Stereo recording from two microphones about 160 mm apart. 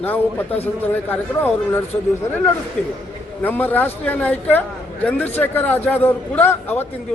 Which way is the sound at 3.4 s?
10° left (ahead or behind).